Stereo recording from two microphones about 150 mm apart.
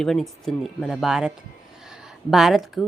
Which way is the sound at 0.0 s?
Centre (ahead or behind).